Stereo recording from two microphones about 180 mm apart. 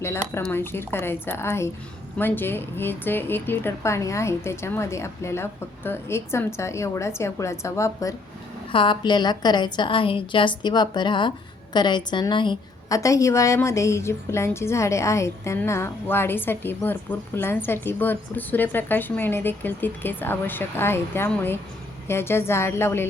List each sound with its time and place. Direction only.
0.3 s a woman's voice: 15° left (ahead or behind)
8.7 s a woman's voice: 25° left (ahead or behind)